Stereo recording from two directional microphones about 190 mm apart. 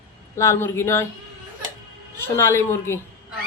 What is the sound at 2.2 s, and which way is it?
Speech, 15° left (ahead or behind).